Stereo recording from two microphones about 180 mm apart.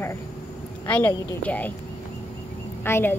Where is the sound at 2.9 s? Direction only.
15° left (ahead or behind).